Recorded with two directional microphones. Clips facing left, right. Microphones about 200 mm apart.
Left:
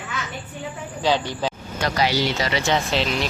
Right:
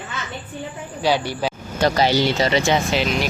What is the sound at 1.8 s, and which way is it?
Speech, 30° right (ahead or behind).